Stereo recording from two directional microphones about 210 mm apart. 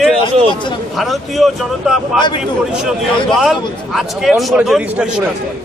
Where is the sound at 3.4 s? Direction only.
Centre (ahead or behind).